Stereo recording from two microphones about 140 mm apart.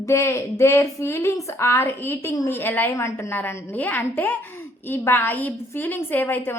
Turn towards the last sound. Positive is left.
turn(degrees=15)  # may be behind; listen again after turning